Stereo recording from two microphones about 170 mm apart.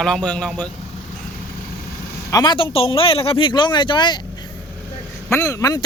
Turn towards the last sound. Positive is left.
turn(degrees=20)  # may be behind; listen again after turning